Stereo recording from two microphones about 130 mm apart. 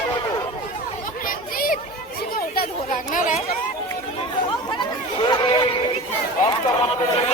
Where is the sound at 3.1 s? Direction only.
90° left.